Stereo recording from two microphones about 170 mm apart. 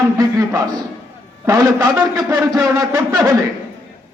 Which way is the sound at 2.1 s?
5° right (ahead or behind).